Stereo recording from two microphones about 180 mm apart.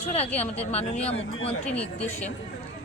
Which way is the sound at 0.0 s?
35° left (ahead or behind).